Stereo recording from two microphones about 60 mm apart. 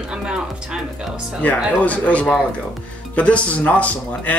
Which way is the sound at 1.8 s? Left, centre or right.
Left.